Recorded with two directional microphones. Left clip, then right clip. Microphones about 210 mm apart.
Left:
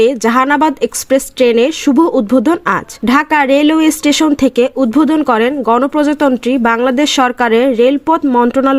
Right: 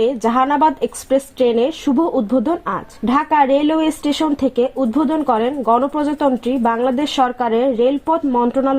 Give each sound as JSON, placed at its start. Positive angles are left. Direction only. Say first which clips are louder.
{"t": 0.0, "sound": "speech", "louder": "left 5 dB", "side_deg": 20}
{"t": 1.9, "sound": "speech", "louder": "left 6 dB", "side_deg": 30}